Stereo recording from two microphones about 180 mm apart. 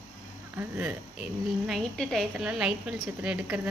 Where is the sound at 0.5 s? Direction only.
10° right (ahead or behind).